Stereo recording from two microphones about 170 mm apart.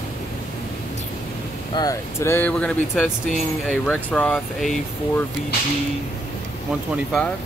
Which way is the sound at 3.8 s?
10° left (ahead or behind).